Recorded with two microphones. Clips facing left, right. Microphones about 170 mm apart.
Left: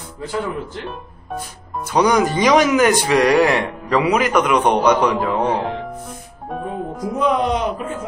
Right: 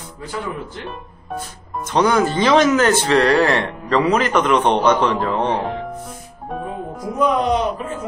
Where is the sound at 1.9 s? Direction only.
15° left (ahead or behind).